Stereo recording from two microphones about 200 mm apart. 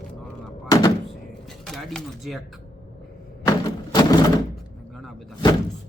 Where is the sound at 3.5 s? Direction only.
20° left (ahead or behind).